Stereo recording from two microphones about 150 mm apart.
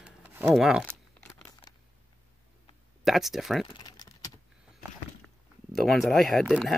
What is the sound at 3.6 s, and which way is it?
Typing, 25° left (ahead or behind).